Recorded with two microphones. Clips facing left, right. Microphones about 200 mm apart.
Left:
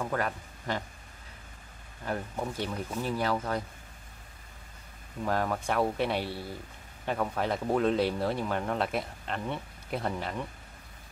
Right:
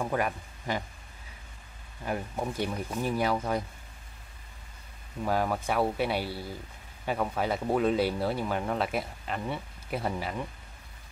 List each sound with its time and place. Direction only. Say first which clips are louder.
0.0 s speech: right 2 dB; 15° right (ahead or behind)
2.0 s speech: right 1 dB; 10° right (ahead or behind)
5.2 s speech: right 1 dB; 5° right (ahead or behind)